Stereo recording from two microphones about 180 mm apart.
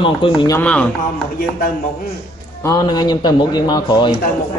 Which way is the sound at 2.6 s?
20° left (ahead or behind).